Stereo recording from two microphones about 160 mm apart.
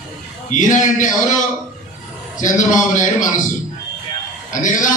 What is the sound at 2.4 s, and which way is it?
A man's voice, 50° left (ahead or behind).